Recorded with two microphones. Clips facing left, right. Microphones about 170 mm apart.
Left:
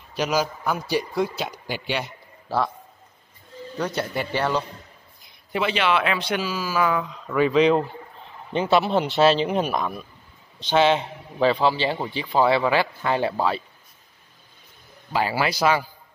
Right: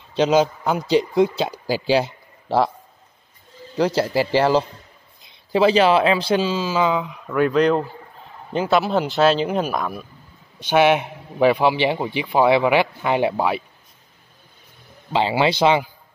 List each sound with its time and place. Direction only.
0.1 s a man's voice: 25° right (ahead or behind)
4.1 s a man's voice: 90° right
5.2 s speech: 30° right (ahead or behind)
7.2 s a man's voice: centre (ahead or behind)
15.1 s speech: 25° right (ahead or behind)